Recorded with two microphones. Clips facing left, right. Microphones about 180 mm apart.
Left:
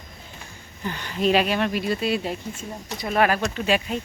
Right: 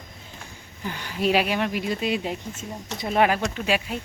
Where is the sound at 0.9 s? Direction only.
10° right (ahead or behind).